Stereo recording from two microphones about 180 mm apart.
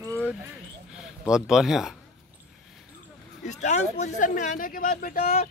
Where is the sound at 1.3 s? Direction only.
5° right (ahead or behind).